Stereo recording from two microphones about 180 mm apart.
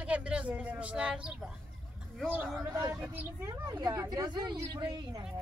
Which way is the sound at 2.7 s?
20° right (ahead or behind).